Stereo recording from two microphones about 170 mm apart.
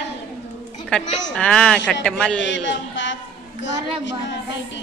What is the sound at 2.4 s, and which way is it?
A man's voice, 90° left.